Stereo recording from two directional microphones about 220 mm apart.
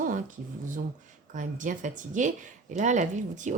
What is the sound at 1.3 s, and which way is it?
A woman's voice, 35° right (ahead or behind).